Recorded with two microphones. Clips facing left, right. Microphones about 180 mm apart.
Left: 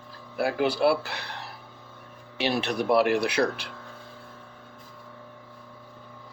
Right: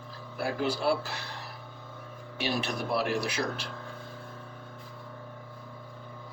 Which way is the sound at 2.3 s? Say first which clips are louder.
Left 5 dB; 65° left (ahead or behind).